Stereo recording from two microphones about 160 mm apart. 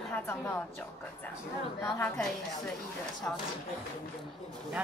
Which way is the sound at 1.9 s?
10° left (ahead or behind).